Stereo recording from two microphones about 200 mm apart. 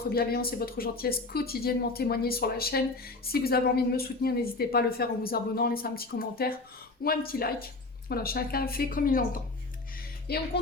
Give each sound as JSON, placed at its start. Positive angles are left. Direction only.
{"t": 0.1, "sound": "speech", "side_deg": 50}
{"t": 10.2, "sound": "speech", "side_deg": 55}